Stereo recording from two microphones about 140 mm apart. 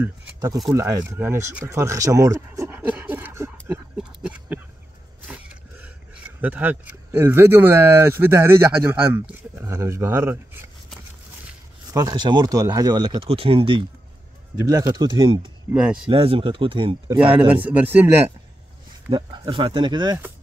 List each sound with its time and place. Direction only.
0.7 s speech: 20° right (ahead or behind)
2.7 s pant: 10° right (ahead or behind)
4.0 s a sound: 10° right (ahead or behind)
5.3 s speech: 10° right (ahead or behind)
11.9 s speech: 30° right (ahead or behind)
14.6 s speech: 25° right (ahead or behind)
15.7 s speech: 5° right (ahead or behind)
16.1 s speech: 40° right (ahead or behind)
17.3 s speech: 10° right (ahead or behind)
19.0 s speech: 30° right (ahead or behind)